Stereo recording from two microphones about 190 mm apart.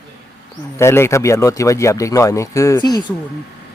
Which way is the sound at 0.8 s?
15° left (ahead or behind).